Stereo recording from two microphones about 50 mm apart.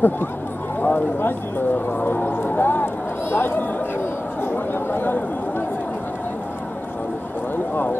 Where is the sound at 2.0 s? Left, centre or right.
Left.